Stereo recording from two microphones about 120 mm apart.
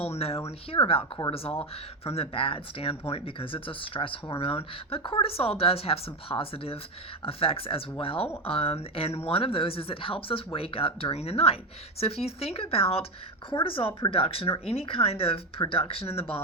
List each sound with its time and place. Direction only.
0.0 s speech: 55° left (ahead or behind)